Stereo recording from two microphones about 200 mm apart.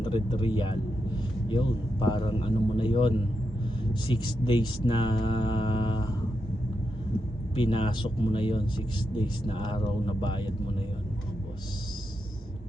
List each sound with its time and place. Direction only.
0.0 s speech: 25° left (ahead or behind)
7.5 s speech: 25° left (ahead or behind)